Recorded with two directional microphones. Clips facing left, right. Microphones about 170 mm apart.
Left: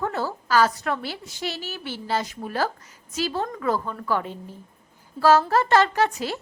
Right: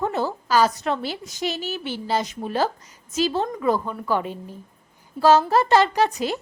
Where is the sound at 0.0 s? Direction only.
20° right (ahead or behind).